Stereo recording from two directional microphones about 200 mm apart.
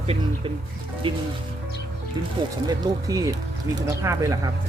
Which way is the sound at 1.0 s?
25° right (ahead or behind).